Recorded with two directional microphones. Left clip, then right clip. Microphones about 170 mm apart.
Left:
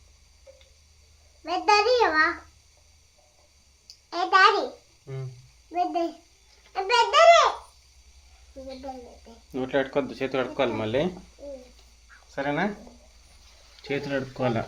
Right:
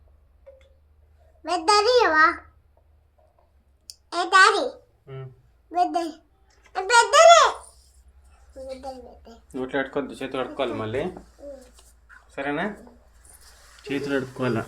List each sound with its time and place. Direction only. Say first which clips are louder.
1.5 s a child's voice: right 1 dB; 55° right (ahead or behind)
4.1 s a sound: right 2 dB; 45° right (ahead or behind)
6.7 s a sound: right 3 dB; 55° right (ahead or behind)
9.5 s speech: left 1 dB; 40° left (ahead or behind)
12.3 s speech: even; 35° left (ahead or behind)
13.8 s speech: right 2 dB; 40° left (ahead or behind)